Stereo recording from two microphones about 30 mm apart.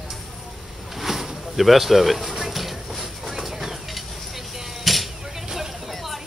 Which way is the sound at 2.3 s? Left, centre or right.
Centre.